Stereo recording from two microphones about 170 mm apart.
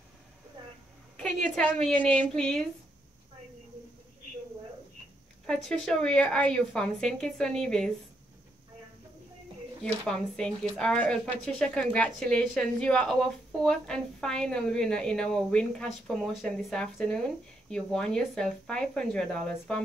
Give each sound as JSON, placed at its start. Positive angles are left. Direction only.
{"t": 1.1, "sound": "a woman's voice", "side_deg": 10}
{"t": 5.5, "sound": "a woman's voice", "side_deg": 5}
{"t": 10.0, "sound": "a woman's voice", "side_deg": 5}